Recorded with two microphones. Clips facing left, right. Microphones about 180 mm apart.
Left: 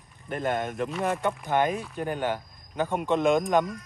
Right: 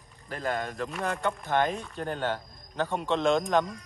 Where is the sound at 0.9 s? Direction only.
5° left (ahead or behind).